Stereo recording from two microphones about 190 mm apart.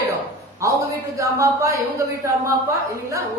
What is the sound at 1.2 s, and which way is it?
Speech, 15° right (ahead or behind).